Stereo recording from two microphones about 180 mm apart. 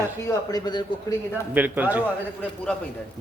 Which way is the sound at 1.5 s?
10° right (ahead or behind).